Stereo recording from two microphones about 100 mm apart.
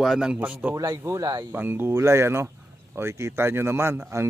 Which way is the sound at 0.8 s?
30° right (ahead or behind).